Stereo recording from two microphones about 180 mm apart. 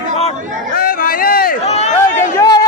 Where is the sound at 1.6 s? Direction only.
40° left (ahead or behind).